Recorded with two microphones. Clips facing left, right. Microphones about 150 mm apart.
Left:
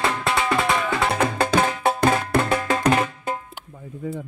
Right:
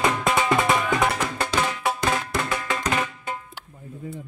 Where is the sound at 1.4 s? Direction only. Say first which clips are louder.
Left 3 dB; 50° left (ahead or behind).